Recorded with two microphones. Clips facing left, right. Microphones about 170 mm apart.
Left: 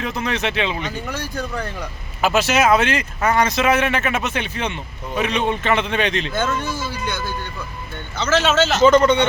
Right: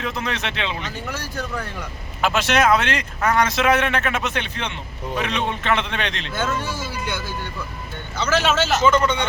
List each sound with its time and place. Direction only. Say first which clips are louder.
0.0 s speech: left 3 dB; centre (ahead or behind)
6.3 s speech: left 2 dB; 10° right (ahead or behind)
8.2 s speech: left 3 dB; 10° right (ahead or behind)
8.8 s speech: left 7 dB; 40° left (ahead or behind)